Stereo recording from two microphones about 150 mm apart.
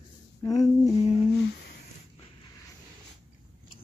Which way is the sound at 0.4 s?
25° left (ahead or behind).